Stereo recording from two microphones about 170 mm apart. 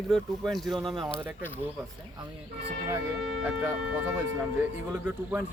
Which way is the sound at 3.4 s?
10° right (ahead or behind).